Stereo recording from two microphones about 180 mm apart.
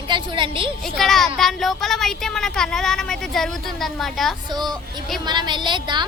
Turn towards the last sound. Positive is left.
turn(degrees=-25)  # may be behind; listen again after turning